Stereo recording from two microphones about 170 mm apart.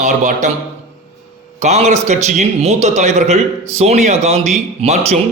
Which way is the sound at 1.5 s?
40° right (ahead or behind).